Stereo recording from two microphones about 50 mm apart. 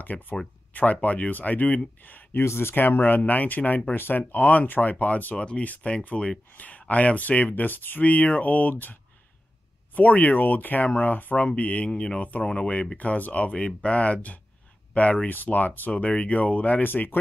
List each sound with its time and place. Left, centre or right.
0.0 s speech: left
2.3 s speech: left
4.3 s speech: left
9.9 s speech: left
15.9 s speech: left